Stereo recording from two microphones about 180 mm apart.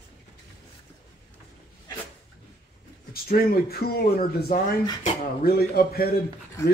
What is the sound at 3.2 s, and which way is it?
Speech, 55° left (ahead or behind).